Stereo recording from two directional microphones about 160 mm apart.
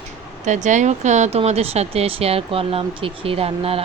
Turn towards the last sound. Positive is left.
turn(degrees=-40)  # may be behind; listen again after turning